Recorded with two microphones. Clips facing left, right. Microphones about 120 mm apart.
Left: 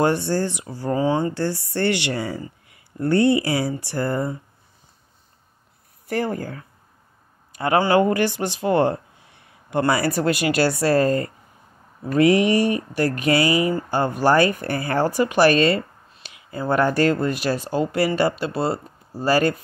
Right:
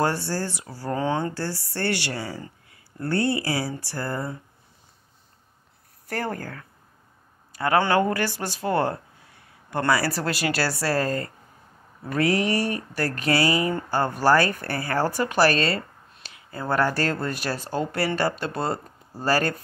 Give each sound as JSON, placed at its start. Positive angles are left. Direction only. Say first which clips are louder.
{"t": 0.0, "sound": "speech", "louder": "left 5 dB", "side_deg": 20}
{"t": 1.3, "sound": "speech", "louder": "left 6 dB", "side_deg": 20}
{"t": 6.0, "sound": "speech", "louder": "left 5 dB", "side_deg": 15}
{"t": 16.2, "sound": "a sound", "louder": "left 2 dB", "side_deg": -40}
{"t": 16.4, "sound": "speech", "louder": "left 4 dB", "side_deg": 15}